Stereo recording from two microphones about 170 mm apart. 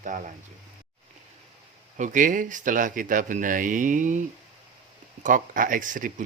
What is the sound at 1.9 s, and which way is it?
Speech, 50° right (ahead or behind).